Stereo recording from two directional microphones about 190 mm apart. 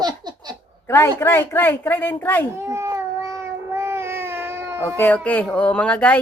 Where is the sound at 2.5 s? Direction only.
15° right (ahead or behind).